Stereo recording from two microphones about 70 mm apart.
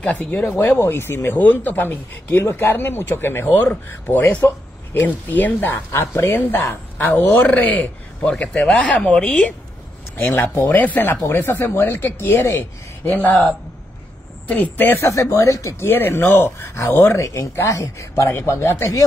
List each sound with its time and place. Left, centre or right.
0.0 s speech: centre
0.5 s a man's voice: left
5.9 s a man's voice: left
7.4 s speech: left
10.1 s a man's voice: left
15.0 s speech: left
15.9 s a man's voice: left
17.2 s a man's voice: left